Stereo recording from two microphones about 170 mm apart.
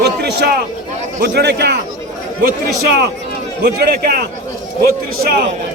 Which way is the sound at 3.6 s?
65° right (ahead or behind).